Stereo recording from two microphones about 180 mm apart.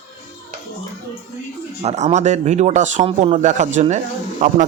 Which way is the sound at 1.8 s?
40° right (ahead or behind).